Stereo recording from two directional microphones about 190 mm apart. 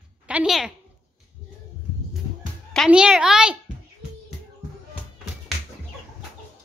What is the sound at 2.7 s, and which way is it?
Speech, 5° right (ahead or behind).